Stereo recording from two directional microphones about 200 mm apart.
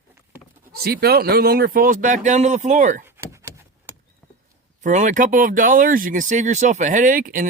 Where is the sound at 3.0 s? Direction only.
10° right (ahead or behind).